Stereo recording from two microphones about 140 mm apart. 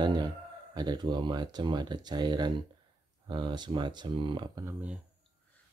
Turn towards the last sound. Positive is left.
turn(degrees=-10)  # may be behind; listen again after turning